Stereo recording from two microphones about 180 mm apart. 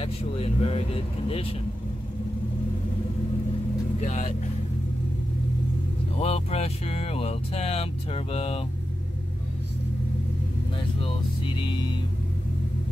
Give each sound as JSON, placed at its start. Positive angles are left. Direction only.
{"t": 0.0, "sound": "vehicle", "side_deg": 30}
{"t": 4.0, "sound": "speech", "side_deg": 40}
{"t": 6.1, "sound": "vehicle", "side_deg": 35}
{"t": 11.0, "sound": "music", "side_deg": 30}